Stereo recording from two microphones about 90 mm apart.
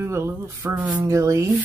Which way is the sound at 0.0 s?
30° right (ahead or behind).